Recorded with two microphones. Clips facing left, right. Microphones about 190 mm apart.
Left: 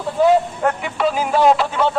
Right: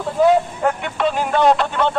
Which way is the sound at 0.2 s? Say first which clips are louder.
Even; centre (ahead or behind).